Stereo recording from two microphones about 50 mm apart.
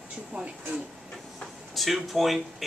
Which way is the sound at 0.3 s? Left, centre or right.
Right.